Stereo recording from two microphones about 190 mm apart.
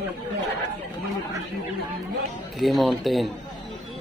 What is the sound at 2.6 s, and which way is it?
Speech, centre (ahead or behind).